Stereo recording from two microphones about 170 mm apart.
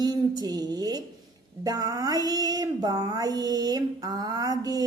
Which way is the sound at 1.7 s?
20° right (ahead or behind).